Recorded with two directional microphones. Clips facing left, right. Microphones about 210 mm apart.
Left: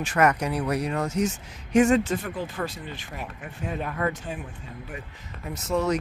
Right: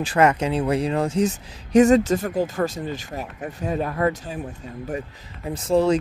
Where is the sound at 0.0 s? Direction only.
30° right (ahead or behind).